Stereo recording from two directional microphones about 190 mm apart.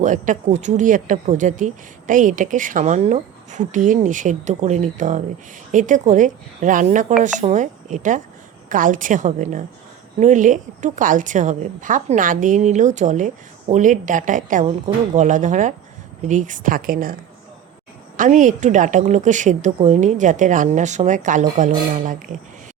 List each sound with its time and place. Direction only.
0.0 s a woman's voice: 40° right (ahead or behind)
18.2 s speech: 40° right (ahead or behind)